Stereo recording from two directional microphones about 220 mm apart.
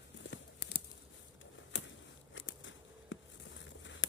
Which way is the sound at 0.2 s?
50° left (ahead or behind).